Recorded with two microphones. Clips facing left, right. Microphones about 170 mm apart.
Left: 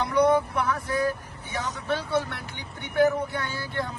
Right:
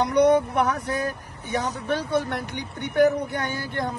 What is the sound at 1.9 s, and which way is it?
Speech, 15° right (ahead or behind).